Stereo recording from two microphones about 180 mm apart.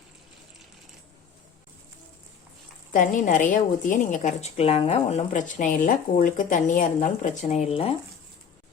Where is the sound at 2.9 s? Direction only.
45° left (ahead or behind).